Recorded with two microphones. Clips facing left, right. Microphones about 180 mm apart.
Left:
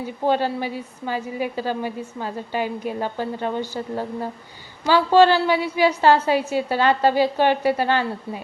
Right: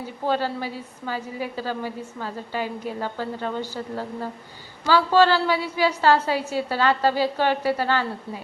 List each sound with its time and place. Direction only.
0.3 s a woman's voice: 20° left (ahead or behind)